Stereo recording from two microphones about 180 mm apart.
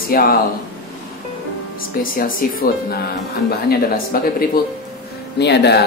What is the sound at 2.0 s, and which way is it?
Speech, 50° left (ahead or behind).